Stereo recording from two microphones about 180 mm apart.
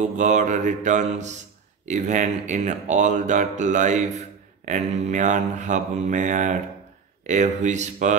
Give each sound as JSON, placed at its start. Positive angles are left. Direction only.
{"t": 0.0, "sound": "mantra", "side_deg": -40}
{"t": 1.9, "sound": "speech", "side_deg": -40}
{"t": 7.2, "sound": "mantra", "side_deg": -40}